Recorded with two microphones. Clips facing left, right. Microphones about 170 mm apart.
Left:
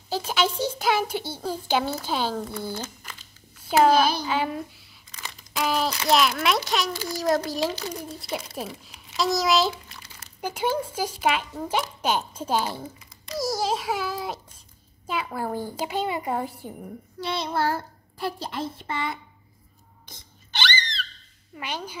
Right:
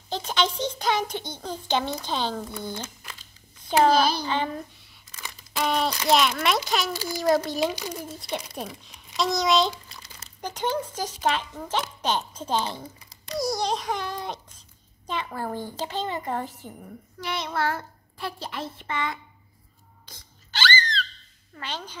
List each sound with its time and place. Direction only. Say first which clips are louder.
0.1 s a child's voice: left 1 dB; 5° left (ahead or behind)
7.6 s a child's voice: right 1 dB; 15° right (ahead or behind)
8.0 s a child's voice: even; centre (ahead or behind)
13.4 s a sound: left 1 dB; centre (ahead or behind)
15.0 s a child's voice: left 2 dB; 5° left (ahead or behind)
17.2 s a child's voice: left 2 dB; 35° left (ahead or behind)
20.1 s a sound: left 1 dB; 20° left (ahead or behind)
21.5 s a child's voice: left 2 dB; 10° left (ahead or behind)